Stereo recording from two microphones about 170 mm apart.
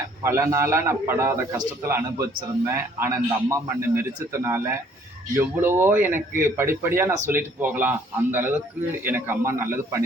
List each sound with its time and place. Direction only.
0.3 s speech: 15° right (ahead or behind)